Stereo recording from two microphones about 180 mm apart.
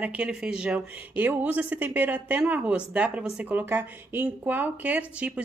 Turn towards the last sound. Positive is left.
turn(degrees=-5)  # may be behind; listen again after turning